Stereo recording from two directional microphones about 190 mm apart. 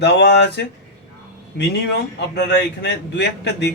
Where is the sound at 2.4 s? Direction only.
65° left (ahead or behind).